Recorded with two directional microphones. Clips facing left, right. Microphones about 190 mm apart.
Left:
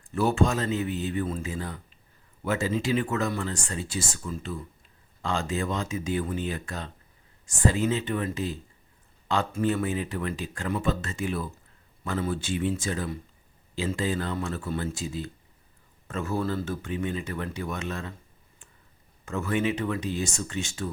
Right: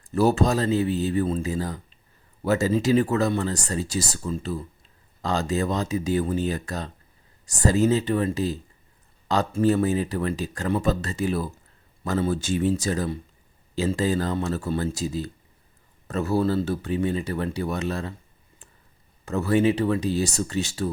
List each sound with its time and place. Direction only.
0.0 s speech: 40° right (ahead or behind)
19.2 s speech: 35° right (ahead or behind)